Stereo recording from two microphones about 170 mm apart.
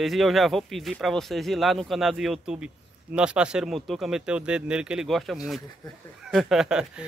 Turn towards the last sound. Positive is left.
turn(degrees=-5)  # may be behind; listen again after turning